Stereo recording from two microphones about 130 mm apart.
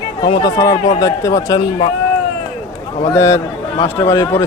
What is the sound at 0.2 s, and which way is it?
Speech, 35° left (ahead or behind).